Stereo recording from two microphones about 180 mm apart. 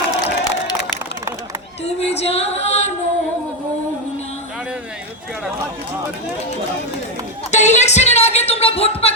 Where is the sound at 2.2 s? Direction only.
35° left (ahead or behind).